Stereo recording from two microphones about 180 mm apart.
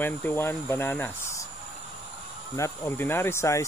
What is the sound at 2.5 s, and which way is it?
Speech, 15° left (ahead or behind).